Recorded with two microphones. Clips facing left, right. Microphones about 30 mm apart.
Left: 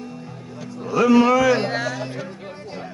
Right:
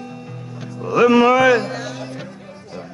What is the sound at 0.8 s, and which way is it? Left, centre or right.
Speech, centre.